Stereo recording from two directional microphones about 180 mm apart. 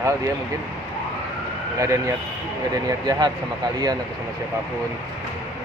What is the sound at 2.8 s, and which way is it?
Speech, 20° right (ahead or behind).